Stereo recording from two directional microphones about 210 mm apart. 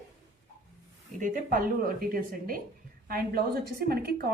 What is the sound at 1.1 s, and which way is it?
A woman's voice, 40° right (ahead or behind).